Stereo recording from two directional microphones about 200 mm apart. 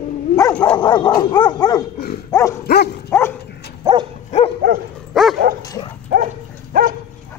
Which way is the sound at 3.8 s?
20° right (ahead or behind).